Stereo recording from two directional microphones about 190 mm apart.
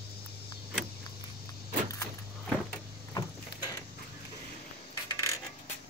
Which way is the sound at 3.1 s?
20° left (ahead or behind).